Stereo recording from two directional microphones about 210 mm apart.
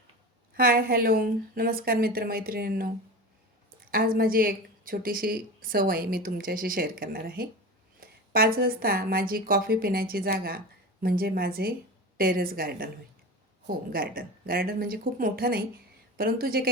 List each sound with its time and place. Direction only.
0.5 s a woman's voice: 45° right (ahead or behind)
3.9 s a woman's voice: 45° right (ahead or behind)